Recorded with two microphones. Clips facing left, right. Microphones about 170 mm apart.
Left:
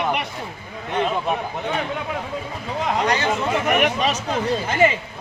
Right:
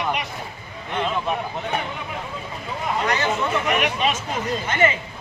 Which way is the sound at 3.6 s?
50° left (ahead or behind).